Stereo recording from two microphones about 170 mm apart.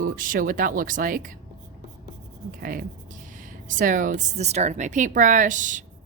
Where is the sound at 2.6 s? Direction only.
55° right (ahead or behind).